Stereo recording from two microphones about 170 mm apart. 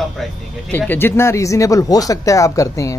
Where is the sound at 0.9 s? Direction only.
15° left (ahead or behind).